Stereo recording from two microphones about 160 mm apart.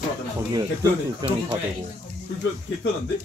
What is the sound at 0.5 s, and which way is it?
Speech, 20° right (ahead or behind).